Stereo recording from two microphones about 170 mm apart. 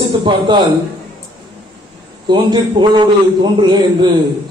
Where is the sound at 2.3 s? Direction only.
25° right (ahead or behind).